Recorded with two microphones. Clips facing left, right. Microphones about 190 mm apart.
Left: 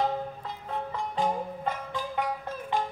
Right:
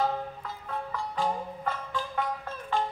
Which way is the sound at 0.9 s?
20° left (ahead or behind).